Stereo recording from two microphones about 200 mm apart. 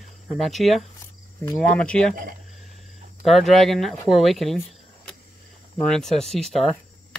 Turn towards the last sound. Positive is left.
turn(degrees=0)  # may be behind; listen again after turning